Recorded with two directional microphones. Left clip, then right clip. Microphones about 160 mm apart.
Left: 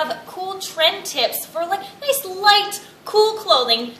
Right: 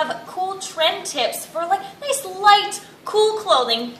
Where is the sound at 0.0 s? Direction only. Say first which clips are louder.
Right 1 dB; 5° left (ahead or behind).